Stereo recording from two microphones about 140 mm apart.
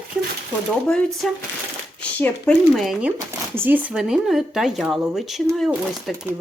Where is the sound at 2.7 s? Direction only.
Centre (ahead or behind).